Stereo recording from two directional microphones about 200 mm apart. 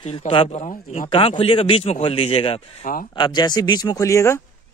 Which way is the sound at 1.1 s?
25° left (ahead or behind).